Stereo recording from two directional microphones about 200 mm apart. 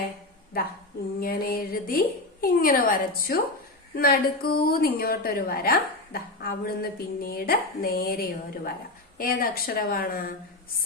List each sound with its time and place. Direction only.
1.2 s a woman's voice: 45° left (ahead or behind)